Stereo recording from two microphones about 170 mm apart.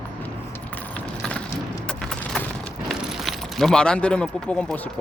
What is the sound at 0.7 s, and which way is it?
Mechanisms, 10° left (ahead or behind).